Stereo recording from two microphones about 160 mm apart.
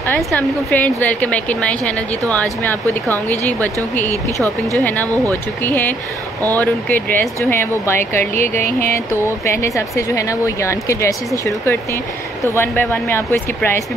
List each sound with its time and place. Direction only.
0.0 s speech: 10° left (ahead or behind)
4.1 s speech: 20° right (ahead or behind)
5.3 s speech: 10° left (ahead or behind)